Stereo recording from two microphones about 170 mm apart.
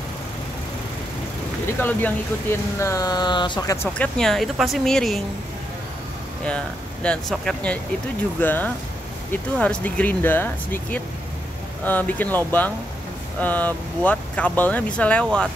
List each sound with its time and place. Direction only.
1.8 s speech: 10° left (ahead or behind); by 3.7 s 25° left (ahead or behind)
3.7 s speech: 15° left (ahead or behind)
4.2 s speech: centre (ahead or behind)
6.4 s speech: 5° left (ahead or behind)